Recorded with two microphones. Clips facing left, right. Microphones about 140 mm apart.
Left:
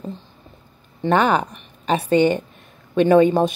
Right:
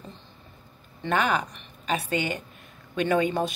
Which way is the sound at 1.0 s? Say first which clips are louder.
Left 8 dB; 35° left (ahead or behind).